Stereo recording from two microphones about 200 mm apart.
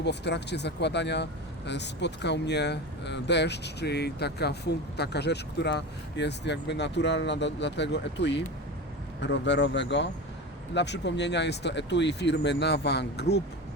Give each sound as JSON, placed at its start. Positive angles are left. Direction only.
{"t": 0.0, "sound": "speech", "side_deg": 60}